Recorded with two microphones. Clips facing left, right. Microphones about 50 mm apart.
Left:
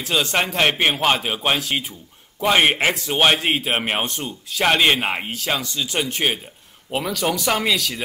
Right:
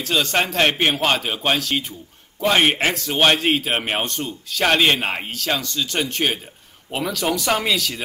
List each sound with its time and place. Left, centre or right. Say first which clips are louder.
0.0 s a man's voice: right 1 dB; centre